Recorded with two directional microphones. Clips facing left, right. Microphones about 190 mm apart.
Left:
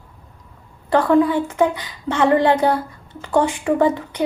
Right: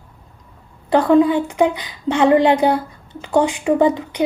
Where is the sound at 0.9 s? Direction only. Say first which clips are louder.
Right 2 dB; 15° right (ahead or behind).